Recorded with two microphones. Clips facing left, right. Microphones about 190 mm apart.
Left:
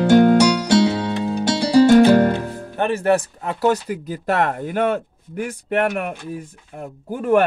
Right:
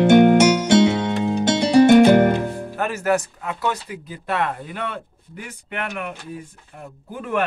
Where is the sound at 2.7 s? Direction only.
30° left (ahead or behind); by 6.1 s 45° left (ahead or behind).